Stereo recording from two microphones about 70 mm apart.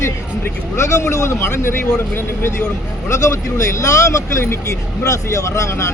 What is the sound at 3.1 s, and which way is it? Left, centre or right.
Speech, left.